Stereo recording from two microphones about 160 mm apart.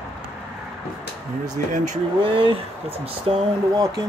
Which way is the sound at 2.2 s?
35° right (ahead or behind).